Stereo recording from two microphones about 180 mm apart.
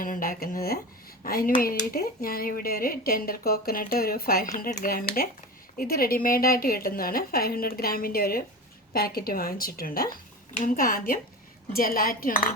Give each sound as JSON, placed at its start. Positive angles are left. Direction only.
{"t": 0.0, "sound": "a woman's voice", "side_deg": 50}